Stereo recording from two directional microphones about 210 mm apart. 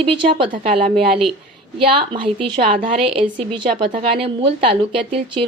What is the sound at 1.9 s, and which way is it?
A woman's voice, 25° right (ahead or behind).